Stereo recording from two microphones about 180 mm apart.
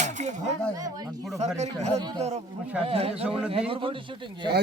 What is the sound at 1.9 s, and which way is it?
Speech, 20° right (ahead or behind).